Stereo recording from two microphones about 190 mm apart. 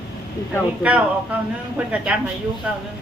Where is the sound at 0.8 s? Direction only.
5° right (ahead or behind).